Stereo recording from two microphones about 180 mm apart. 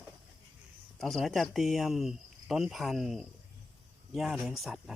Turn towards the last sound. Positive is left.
turn(degrees=0)  # may be behind; listen again after turning